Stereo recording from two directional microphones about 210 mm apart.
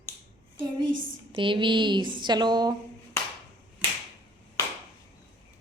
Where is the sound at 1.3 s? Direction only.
25° right (ahead or behind).